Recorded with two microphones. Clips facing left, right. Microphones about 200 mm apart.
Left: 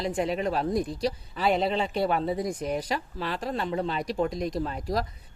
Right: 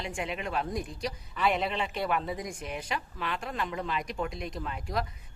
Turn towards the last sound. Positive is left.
turn(degrees=35)  # may be behind; listen again after turning